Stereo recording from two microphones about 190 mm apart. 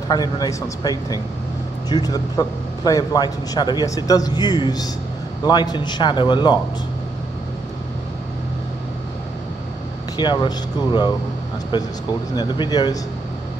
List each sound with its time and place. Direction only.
0.1 s a man's voice: 20° left (ahead or behind)
10.1 s a man's voice: 25° left (ahead or behind)